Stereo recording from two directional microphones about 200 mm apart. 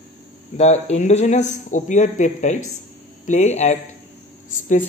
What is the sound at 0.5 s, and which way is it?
A man's voice, 35° left (ahead or behind).